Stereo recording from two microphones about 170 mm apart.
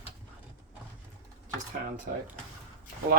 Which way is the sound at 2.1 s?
55° right (ahead or behind).